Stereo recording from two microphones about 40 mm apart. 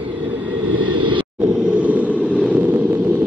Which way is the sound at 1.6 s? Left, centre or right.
Right.